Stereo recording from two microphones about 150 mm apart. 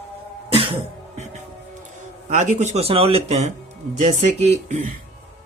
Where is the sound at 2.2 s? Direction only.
50° right (ahead or behind).